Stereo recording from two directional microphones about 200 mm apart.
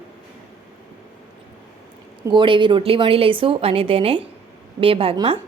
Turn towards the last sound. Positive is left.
turn(degrees=-25)  # may be behind; listen again after turning